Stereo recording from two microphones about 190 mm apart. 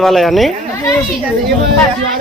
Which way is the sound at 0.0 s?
Centre (ahead or behind).